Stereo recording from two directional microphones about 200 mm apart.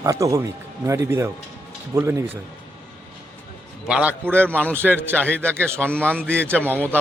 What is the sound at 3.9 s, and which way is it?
Speech, 5° right (ahead or behind).